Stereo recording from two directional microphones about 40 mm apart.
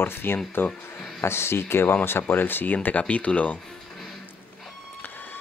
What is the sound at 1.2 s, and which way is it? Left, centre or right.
Speech, left.